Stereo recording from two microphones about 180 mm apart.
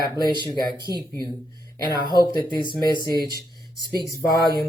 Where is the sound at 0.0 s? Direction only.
25° left (ahead or behind).